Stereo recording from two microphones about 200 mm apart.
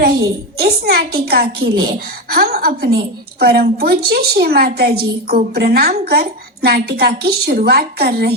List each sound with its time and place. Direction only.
0.6 s a woman's voice: 50° right (ahead or behind)